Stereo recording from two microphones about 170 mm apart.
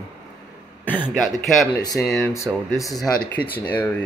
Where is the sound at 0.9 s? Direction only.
5° left (ahead or behind).